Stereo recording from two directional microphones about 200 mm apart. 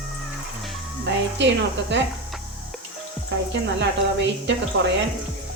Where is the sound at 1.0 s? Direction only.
65° right (ahead or behind).